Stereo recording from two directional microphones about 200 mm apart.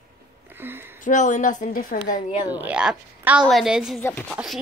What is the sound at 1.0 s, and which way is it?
A woman's voice, 40° left (ahead or behind).